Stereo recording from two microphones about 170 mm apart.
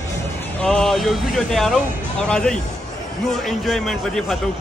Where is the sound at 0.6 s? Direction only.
5° left (ahead or behind).